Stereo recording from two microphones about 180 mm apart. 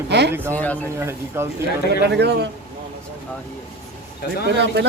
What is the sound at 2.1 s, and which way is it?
Speech, 65° right (ahead or behind).